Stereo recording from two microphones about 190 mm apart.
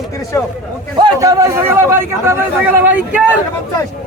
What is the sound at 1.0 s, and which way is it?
A man's voice, 20° right (ahead or behind).